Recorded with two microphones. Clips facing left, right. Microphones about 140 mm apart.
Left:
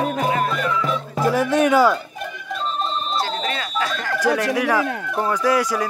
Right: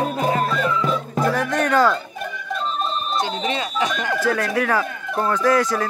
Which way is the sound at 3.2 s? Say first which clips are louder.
Right 1 dB; 20° right (ahead or behind).